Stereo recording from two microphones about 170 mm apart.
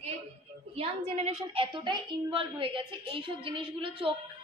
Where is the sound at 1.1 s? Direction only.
35° right (ahead or behind).